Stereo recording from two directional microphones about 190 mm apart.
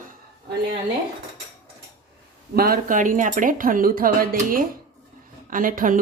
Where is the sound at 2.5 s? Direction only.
50° right (ahead or behind).